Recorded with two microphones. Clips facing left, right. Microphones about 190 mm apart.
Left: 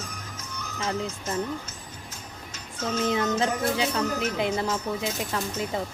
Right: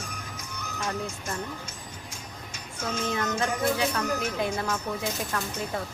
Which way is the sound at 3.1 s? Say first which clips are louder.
Left 2 dB; 20° left (ahead or behind).